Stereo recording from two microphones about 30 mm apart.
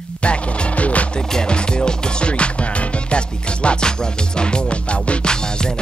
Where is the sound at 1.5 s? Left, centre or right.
Left.